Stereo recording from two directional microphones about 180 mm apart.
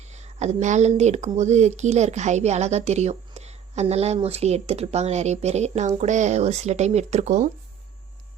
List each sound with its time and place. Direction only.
0.0 s speech: 40° right (ahead or behind)